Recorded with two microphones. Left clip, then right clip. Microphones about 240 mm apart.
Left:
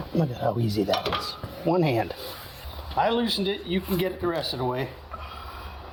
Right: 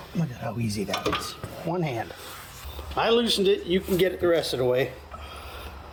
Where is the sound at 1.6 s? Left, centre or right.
Left.